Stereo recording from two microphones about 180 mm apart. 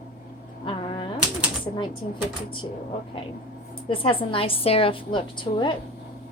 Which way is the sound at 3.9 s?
30° left (ahead or behind).